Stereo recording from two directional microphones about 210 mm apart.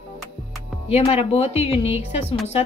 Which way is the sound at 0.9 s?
30° left (ahead or behind).